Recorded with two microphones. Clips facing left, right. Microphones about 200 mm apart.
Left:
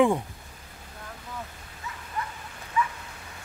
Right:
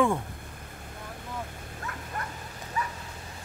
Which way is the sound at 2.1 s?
50° right (ahead or behind).